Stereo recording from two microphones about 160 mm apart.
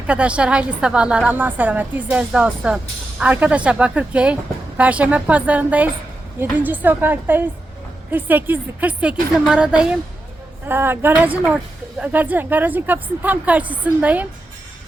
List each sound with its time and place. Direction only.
0.1 s a woman's voice: 5° right (ahead or behind)